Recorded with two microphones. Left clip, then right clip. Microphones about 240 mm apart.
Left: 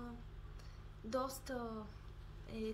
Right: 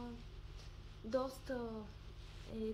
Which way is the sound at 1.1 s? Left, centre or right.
Left.